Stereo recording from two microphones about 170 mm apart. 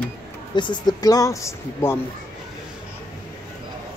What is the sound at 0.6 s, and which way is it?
Speech, 25° left (ahead or behind).